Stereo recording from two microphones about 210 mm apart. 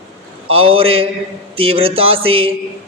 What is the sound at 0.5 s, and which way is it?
Speech, 25° right (ahead or behind).